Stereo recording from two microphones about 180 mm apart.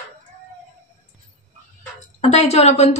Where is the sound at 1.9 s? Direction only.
35° left (ahead or behind).